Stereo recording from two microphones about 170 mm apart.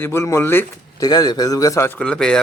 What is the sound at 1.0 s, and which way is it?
A man's voice, 25° left (ahead or behind).